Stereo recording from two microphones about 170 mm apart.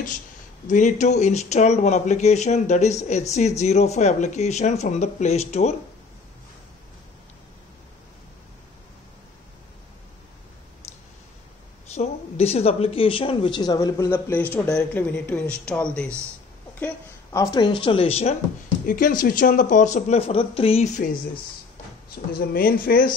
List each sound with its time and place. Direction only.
0.7 s speech: 45° left (ahead or behind)
11.9 s speech: 40° left (ahead or behind); by 16.1 s 5° left (ahead or behind)
16.8 s speech: 20° left (ahead or behind); by 18.3 s 35° left (ahead or behind)
18.9 s speech: 55° left (ahead or behind); by 20.9 s 35° left (ahead or behind)
22.3 s speech: 60° left (ahead or behind)